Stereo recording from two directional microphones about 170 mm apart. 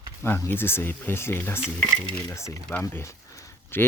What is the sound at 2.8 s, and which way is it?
Speech, 15° left (ahead or behind).